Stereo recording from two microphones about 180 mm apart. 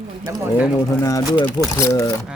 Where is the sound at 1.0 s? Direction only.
20° left (ahead or behind).